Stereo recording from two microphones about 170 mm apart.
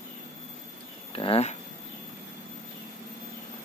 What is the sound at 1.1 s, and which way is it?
Speech, 35° left (ahead or behind).